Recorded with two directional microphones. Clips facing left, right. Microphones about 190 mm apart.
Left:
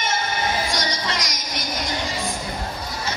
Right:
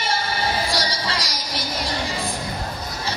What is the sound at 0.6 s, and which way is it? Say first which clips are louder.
Music: right 1 dB; 35° right (ahead or behind).